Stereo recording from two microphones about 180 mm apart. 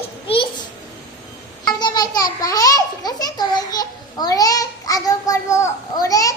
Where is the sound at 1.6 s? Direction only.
25° left (ahead or behind).